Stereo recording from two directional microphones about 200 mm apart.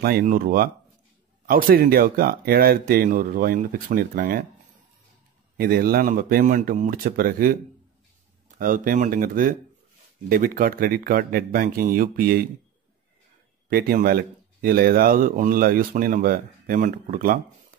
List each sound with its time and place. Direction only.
0.0 s speech: 45° right (ahead or behind)
5.6 s speech: 50° right (ahead or behind)
13.7 s speech: 50° right (ahead or behind)